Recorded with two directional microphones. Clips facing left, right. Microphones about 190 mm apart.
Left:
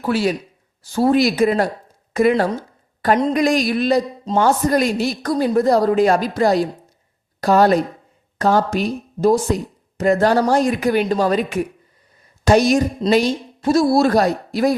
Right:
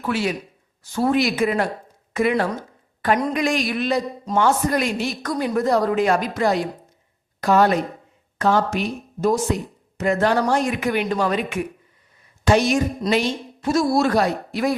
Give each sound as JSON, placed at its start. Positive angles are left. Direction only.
{"t": 0.0, "sound": "a man's voice", "side_deg": 35}
{"t": 2.3, "sound": "a man's voice", "side_deg": 25}